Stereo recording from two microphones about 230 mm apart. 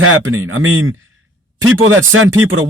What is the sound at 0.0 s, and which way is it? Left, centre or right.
Speech, right.